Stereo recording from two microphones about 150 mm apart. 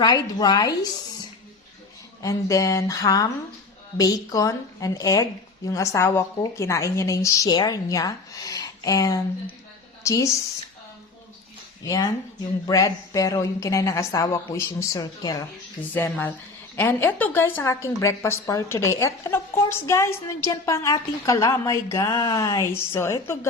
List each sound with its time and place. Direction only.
0.0 s speech: 30° left (ahead or behind)
2.2 s speech: 20° left (ahead or behind)
11.8 s speech: 25° left (ahead or behind)
16.0 s speech: 10° left (ahead or behind)